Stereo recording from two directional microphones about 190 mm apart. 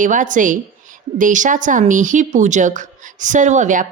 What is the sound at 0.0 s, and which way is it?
A woman's voice, 40° right (ahead or behind).